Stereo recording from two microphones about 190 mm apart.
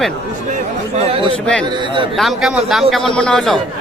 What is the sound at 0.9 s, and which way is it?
Speech, 30° right (ahead or behind).